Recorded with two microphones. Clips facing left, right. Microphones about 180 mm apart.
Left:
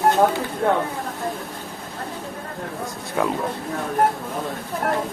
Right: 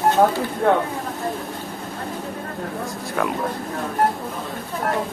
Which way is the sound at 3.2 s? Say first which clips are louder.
Left 1 dB; 20° left (ahead or behind).